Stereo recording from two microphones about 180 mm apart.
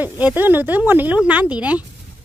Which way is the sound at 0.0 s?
10° right (ahead or behind).